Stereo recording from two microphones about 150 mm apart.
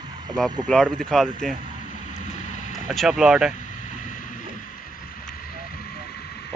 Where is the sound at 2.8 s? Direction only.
5° right (ahead or behind).